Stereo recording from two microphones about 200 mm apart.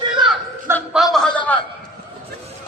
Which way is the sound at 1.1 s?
5° left (ahead or behind).